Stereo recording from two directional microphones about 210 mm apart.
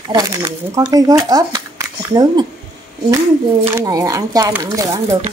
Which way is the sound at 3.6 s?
15° right (ahead or behind).